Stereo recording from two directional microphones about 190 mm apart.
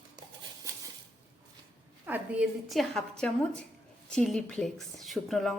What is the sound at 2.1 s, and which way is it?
Cutlery, 5° right (ahead or behind).